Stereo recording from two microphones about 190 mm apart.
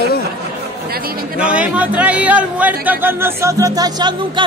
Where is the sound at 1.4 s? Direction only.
5° right (ahead or behind).